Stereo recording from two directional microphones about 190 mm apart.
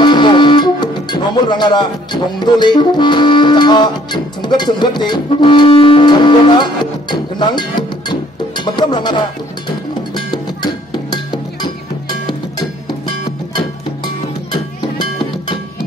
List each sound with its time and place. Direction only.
0.0 s music: 25° left (ahead or behind)
14.0 s music: 25° left (ahead or behind)